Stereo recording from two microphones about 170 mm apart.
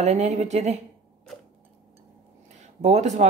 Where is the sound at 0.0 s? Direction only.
40° right (ahead or behind).